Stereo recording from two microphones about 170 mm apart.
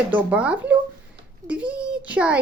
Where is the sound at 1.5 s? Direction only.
10° right (ahead or behind).